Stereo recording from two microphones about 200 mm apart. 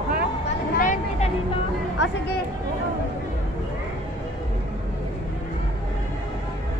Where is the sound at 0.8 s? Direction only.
35° left (ahead or behind).